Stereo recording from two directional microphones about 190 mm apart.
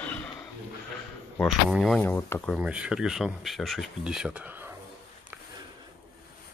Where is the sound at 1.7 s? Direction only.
Centre (ahead or behind).